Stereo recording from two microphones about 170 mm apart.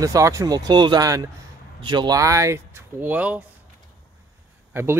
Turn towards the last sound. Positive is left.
turn(degrees=-15)  # may be behind; listen again after turning